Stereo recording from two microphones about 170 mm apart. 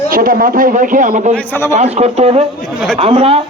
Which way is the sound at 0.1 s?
55° right (ahead or behind).